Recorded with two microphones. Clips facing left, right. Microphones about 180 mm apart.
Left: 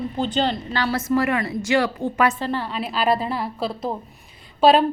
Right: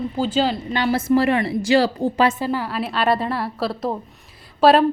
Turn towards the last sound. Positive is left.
turn(degrees=0)  # may be behind; listen again after turning